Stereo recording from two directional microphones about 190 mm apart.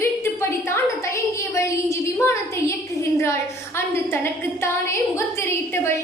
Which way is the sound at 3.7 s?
10° left (ahead or behind).